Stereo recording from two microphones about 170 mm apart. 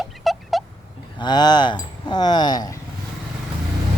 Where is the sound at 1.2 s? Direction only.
25° left (ahead or behind).